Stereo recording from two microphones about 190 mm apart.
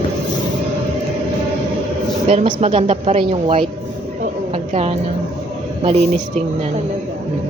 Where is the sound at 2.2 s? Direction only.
35° right (ahead or behind).